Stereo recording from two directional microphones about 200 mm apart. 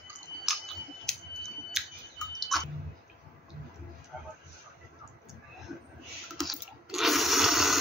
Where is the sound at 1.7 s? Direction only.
Centre (ahead or behind).